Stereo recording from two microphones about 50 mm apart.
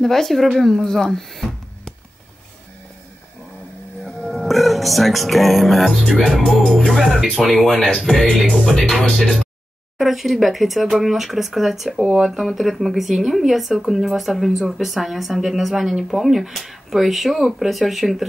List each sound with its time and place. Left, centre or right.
0.0 s speech: centre
4.3 s music: centre
6.4 s music: centre
6.9 s speech: centre